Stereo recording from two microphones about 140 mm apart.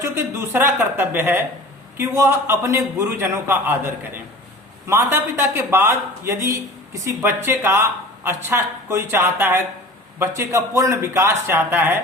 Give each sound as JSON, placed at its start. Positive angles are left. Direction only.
{"t": 0.0, "sound": "speech", "side_deg": -15}